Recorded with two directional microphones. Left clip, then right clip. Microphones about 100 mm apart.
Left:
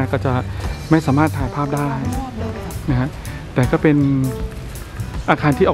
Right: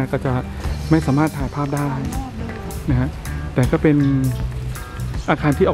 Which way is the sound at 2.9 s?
15° left (ahead or behind).